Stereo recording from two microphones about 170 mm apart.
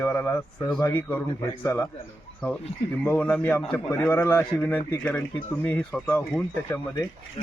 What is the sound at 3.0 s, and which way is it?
Speech, 10° left (ahead or behind).